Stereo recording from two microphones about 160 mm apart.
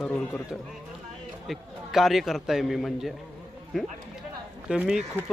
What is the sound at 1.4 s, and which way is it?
Speech, centre (ahead or behind).